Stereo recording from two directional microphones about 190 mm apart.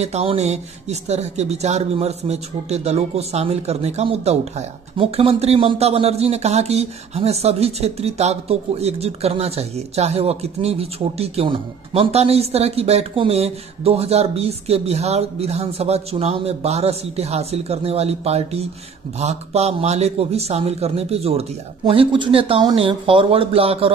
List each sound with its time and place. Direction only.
0.0 s speech: 35° right (ahead or behind)